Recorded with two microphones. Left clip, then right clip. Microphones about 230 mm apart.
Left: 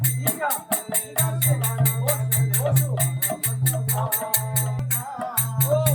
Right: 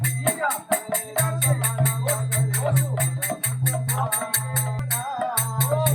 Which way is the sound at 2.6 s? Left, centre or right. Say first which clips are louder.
Even; centre.